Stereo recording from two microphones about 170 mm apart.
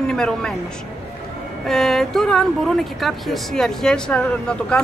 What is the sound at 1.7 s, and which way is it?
Speech, centre (ahead or behind).